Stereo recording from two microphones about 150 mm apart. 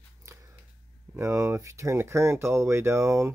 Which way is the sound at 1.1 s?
20° right (ahead or behind).